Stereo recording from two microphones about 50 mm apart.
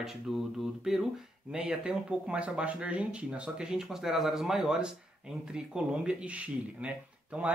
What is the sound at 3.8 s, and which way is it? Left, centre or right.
Speech, centre.